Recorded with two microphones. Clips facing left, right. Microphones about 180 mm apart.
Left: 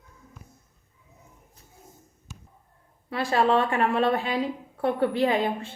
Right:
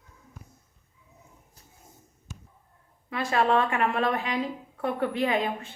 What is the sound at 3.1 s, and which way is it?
A woman's voice, 35° left (ahead or behind).